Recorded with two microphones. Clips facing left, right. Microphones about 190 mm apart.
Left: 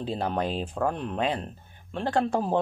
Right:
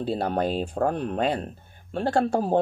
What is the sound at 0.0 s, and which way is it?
Speech, 35° right (ahead or behind).